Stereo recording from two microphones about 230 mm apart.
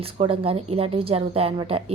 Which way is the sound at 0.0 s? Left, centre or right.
Right.